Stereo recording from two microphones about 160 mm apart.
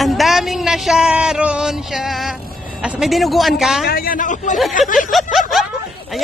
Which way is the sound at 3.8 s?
65° left (ahead or behind).